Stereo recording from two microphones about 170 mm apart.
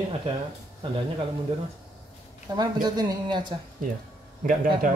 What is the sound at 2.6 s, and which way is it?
Speech, 25° right (ahead or behind).